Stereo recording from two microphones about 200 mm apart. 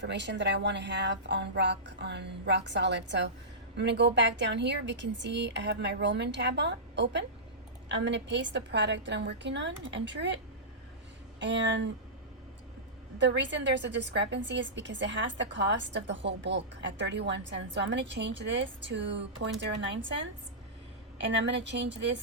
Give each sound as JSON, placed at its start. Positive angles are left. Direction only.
{"t": 0.0, "sound": "a woman's voice", "side_deg": -60}
{"t": 11.3, "sound": "a woman's voice", "side_deg": -65}
{"t": 13.1, "sound": "a woman's voice", "side_deg": -60}
{"t": 21.6, "sound": "a woman's voice", "side_deg": -60}